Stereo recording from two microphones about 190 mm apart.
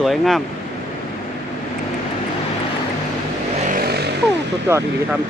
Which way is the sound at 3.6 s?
50° right (ahead or behind).